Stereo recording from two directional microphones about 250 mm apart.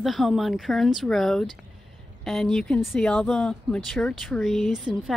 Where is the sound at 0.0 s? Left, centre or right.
Centre.